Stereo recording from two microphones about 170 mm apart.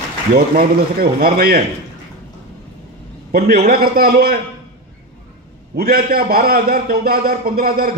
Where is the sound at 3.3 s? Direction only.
65° right (ahead or behind).